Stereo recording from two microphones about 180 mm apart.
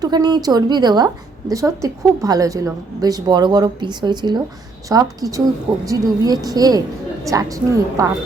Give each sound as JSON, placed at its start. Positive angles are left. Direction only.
{"t": 0.0, "sound": "a woman's voice", "side_deg": -25}